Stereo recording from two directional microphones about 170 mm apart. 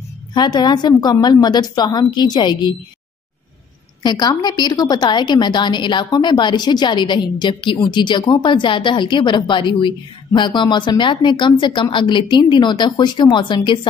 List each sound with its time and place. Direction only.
0.3 s a woman's voice: 25° left (ahead or behind)
4.0 s a woman's voice: 25° left (ahead or behind)